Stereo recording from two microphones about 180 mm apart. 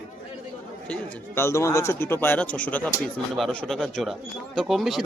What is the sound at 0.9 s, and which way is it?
Speech, 15° left (ahead or behind).